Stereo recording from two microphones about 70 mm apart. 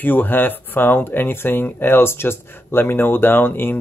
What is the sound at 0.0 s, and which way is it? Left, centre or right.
Speech, left.